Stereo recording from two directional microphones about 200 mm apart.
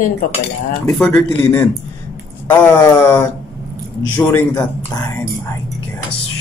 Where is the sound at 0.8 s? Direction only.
5° left (ahead or behind).